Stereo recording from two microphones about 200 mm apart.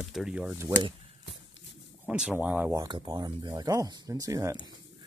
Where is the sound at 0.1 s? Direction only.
5° right (ahead or behind).